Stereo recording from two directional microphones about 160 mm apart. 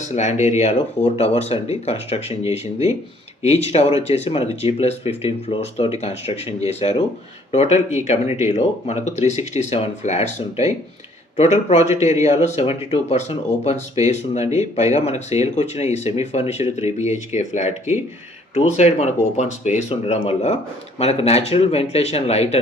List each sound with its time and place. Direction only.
0.0 s speech: 45° left (ahead or behind)